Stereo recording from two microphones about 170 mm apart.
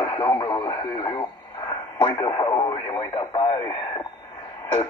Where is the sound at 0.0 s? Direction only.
30° left (ahead or behind).